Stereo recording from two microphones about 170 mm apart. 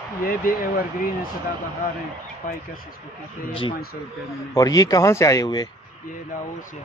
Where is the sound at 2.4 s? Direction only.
50° left (ahead or behind).